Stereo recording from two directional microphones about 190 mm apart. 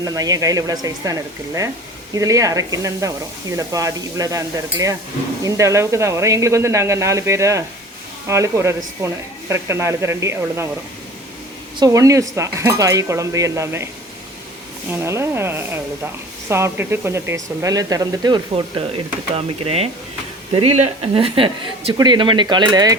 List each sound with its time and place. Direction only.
0.0 s speech: 20° right (ahead or behind)
2.1 s speech: 15° right (ahead or behind)
11.8 s speech: 15° right (ahead or behind)
14.8 s speech: 15° right (ahead or behind)